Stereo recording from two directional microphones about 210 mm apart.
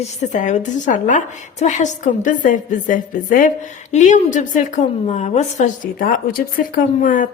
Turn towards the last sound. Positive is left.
turn(degrees=40)  # may be behind; listen again after turning